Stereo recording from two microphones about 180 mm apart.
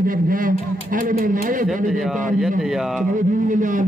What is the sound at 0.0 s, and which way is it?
A man's voice, 50° right (ahead or behind).